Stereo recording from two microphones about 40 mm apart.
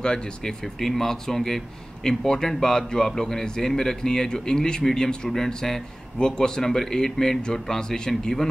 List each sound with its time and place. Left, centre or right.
0.0 s speech: centre
0.7 s speech: centre